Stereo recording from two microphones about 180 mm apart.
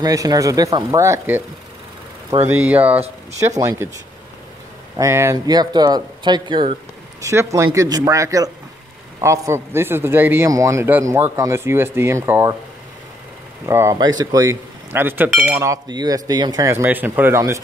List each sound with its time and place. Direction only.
0.0 s speech: 20° right (ahead or behind)
2.4 s a man's voice: 10° right (ahead or behind)
4.9 s a man's voice: 15° right (ahead or behind)
13.7 s a man's voice: 15° right (ahead or behind)
15.6 s a man's voice: 20° right (ahead or behind)